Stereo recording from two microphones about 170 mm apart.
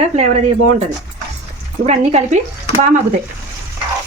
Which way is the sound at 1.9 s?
40° right (ahead or behind).